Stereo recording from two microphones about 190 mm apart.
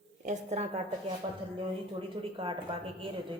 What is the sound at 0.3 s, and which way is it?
A woman's voice, 35° right (ahead or behind).